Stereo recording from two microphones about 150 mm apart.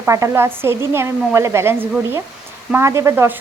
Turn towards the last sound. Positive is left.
turn(degrees=-15)  # may be behind; listen again after turning